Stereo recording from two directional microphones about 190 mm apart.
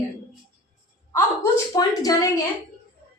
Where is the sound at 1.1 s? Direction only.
15° left (ahead or behind).